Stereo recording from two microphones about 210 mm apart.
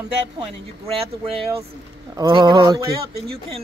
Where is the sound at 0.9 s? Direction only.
25° right (ahead or behind).